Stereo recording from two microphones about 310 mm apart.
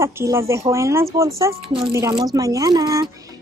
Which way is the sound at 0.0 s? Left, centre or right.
Centre.